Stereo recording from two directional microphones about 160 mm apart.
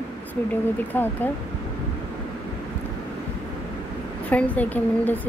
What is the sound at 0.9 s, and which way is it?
Speech, 10° left (ahead or behind).